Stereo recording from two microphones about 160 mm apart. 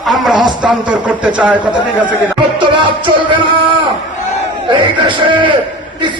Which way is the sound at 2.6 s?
30° right (ahead or behind).